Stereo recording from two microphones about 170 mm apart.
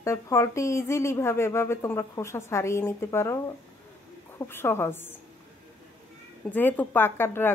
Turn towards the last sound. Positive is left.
turn(degrees=15)  # may be behind; listen again after turning